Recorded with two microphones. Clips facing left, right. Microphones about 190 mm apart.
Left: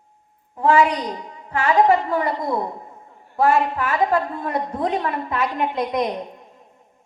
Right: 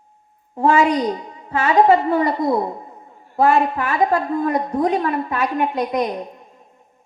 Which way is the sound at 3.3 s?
15° right (ahead or behind).